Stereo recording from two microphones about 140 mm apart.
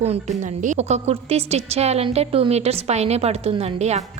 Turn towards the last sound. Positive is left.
turn(degrees=-50)  # may be behind; listen again after turning